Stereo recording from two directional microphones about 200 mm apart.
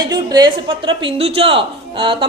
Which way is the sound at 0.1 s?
20° right (ahead or behind).